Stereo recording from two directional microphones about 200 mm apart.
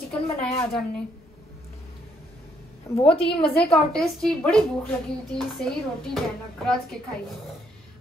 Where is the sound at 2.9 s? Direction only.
15° left (ahead or behind).